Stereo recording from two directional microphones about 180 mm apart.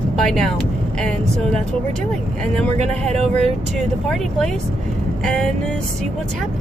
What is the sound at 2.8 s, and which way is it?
Speech, 40° right (ahead or behind).